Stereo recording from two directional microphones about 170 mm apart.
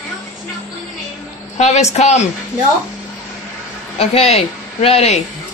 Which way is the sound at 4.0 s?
35° left (ahead or behind).